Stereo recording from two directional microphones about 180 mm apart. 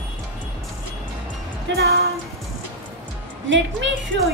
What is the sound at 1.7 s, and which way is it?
Music, 75° right (ahead or behind).